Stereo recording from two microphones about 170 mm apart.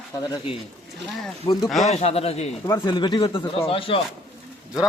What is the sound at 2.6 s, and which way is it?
A man's voice, 20° left (ahead or behind).